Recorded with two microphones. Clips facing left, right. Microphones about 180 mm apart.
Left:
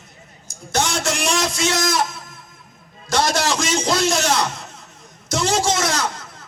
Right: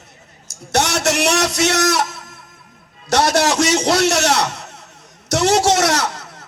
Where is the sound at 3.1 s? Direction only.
65° right (ahead or behind).